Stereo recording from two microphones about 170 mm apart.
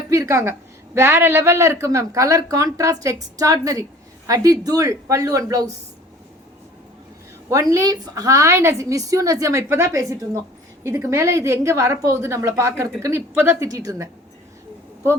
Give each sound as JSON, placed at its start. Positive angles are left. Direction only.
{"t": 0.1, "sound": "speech", "side_deg": -15}
{"t": 7.5, "sound": "a woman's voice", "side_deg": -20}